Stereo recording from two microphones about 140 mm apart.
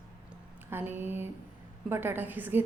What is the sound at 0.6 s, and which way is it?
A woman's voice, 15° right (ahead or behind).